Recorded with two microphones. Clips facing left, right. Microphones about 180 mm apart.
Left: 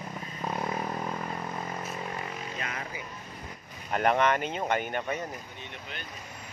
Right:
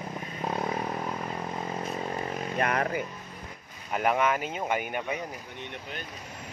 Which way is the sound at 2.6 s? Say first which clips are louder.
Right 10 dB; 60° right (ahead or behind).